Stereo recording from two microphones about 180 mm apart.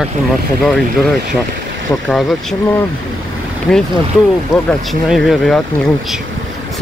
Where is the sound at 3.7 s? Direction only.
5° left (ahead or behind).